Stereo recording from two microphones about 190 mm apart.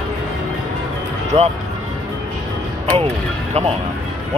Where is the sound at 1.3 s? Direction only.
35° right (ahead or behind).